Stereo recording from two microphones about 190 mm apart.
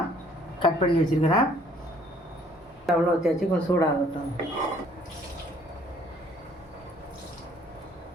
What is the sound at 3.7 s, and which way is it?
Speech, 10° left (ahead or behind).